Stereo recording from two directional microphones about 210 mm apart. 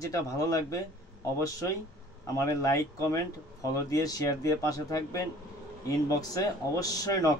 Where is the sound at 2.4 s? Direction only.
15° left (ahead or behind).